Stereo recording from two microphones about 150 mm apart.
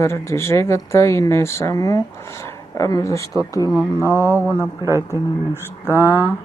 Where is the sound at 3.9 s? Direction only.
15° right (ahead or behind).